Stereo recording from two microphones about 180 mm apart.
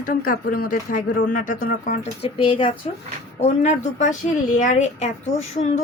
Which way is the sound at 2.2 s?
30° left (ahead or behind).